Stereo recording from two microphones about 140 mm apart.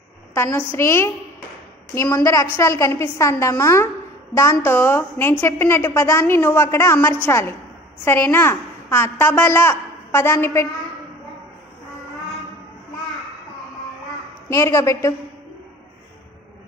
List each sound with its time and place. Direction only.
0.3 s a woman's voice: 15° left (ahead or behind)
14.5 s a woman's voice: 20° left (ahead or behind)